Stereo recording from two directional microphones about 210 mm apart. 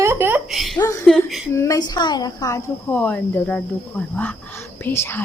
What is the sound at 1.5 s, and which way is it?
Speech, 15° left (ahead or behind).